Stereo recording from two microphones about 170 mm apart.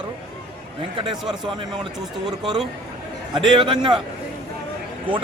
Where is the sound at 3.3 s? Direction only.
30° right (ahead or behind).